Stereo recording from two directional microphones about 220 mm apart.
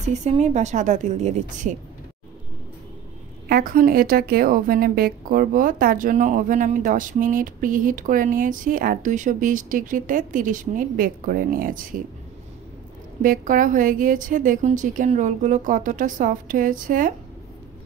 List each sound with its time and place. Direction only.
0.1 s a woman's voice: 30° right (ahead or behind)
3.4 s a woman's voice: 40° right (ahead or behind)
13.2 s a woman's voice: 35° right (ahead or behind)